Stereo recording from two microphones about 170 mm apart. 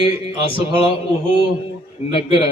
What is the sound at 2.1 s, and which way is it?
Speech, 30° left (ahead or behind).